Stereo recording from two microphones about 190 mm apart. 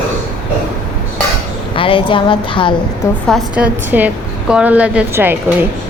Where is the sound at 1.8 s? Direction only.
25° left (ahead or behind).